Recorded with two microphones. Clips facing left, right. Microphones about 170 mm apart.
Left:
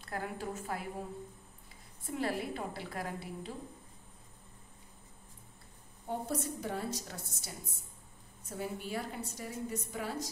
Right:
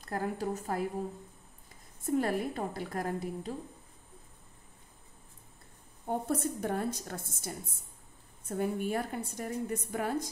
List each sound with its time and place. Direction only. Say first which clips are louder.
0.0 s a woman's voice: right 5 dB; 40° right (ahead or behind)
2.0 s a woman's voice: right 5 dB; 45° right (ahead or behind)
6.0 s a woman's voice: right 4 dB; 55° right (ahead or behind)